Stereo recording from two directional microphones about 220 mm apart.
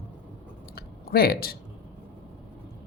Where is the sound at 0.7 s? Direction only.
45° left (ahead or behind).